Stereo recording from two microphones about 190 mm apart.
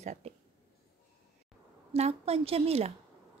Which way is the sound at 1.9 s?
35° right (ahead or behind).